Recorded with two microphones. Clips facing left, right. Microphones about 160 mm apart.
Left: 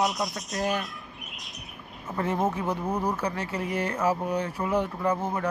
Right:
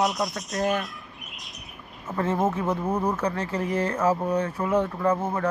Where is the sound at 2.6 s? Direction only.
5° right (ahead or behind).